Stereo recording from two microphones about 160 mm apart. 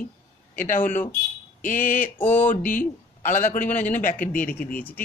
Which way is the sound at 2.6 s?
55° left (ahead or behind).